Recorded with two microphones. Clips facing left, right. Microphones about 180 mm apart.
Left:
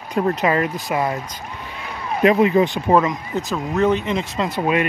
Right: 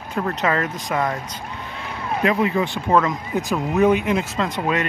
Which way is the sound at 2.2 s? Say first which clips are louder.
Left 6 dB; 20° left (ahead or behind).